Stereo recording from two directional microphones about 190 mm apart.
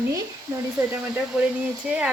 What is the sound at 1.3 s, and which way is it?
Speech, 5° right (ahead or behind).